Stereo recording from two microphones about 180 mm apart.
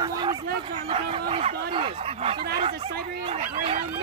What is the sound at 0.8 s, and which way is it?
Speech, 30° right (ahead or behind).